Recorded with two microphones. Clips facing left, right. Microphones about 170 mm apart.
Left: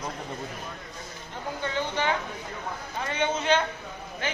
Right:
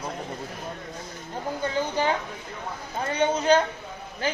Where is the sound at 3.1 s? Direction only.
40° right (ahead or behind).